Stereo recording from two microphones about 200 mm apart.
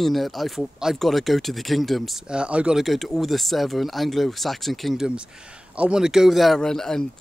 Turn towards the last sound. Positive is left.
turn(degrees=0)  # may be behind; listen again after turning